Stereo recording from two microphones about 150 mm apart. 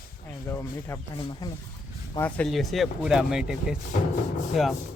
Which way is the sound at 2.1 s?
10° left (ahead or behind).